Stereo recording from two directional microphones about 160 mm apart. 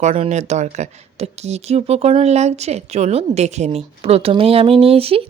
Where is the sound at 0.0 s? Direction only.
45° right (ahead or behind).